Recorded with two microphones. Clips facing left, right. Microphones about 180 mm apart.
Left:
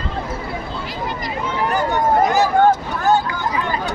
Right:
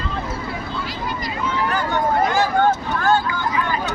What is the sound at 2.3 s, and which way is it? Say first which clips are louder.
Speech: left 3 dB; 40° left (ahead or behind).